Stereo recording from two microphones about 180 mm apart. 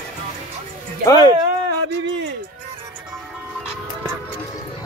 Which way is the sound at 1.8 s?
85° right.